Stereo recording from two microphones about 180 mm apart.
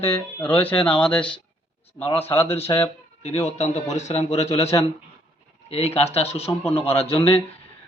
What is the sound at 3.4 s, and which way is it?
A man's voice, 40° left (ahead or behind).